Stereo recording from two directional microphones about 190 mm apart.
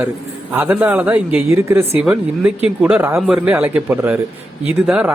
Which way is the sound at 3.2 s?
Centre (ahead or behind).